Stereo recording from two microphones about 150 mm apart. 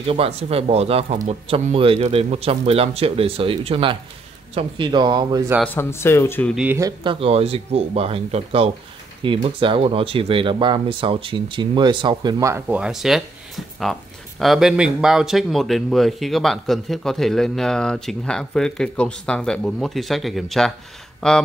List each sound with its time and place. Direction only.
0.0 s speech: 40° right (ahead or behind)
5.8 s speech: 15° left (ahead or behind)
6.5 s speech: 10° right (ahead or behind)
6.8 s a man's voice: 30° right (ahead or behind); by 21.4 s 5° left (ahead or behind)